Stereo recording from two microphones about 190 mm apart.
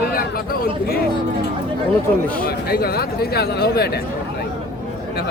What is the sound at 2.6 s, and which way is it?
Speech, 55° left (ahead or behind).